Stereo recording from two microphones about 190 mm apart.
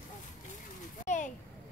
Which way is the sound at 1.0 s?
40° left (ahead or behind).